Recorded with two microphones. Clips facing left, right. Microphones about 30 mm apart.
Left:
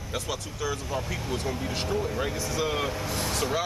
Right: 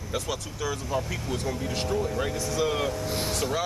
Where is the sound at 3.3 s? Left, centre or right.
Centre.